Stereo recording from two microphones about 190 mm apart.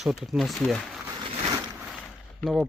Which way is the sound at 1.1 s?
30° right (ahead or behind).